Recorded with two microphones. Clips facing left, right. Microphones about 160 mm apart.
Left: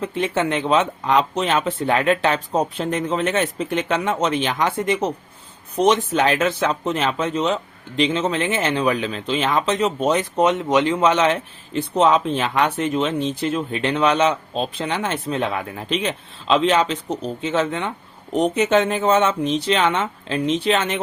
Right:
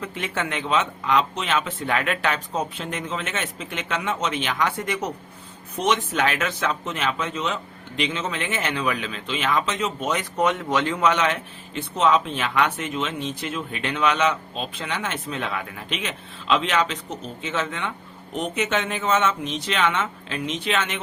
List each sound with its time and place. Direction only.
0.0 s speech: 30° left (ahead or behind)
5.8 s speech: 35° left (ahead or behind)